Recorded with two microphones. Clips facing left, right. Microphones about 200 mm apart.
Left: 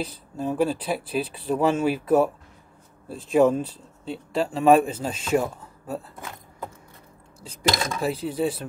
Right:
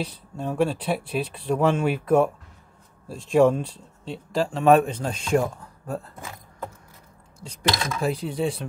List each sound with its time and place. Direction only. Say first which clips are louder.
0.0 s speech: left 1 dB; centre (ahead or behind)
7.4 s speech: left 1 dB; 5° left (ahead or behind)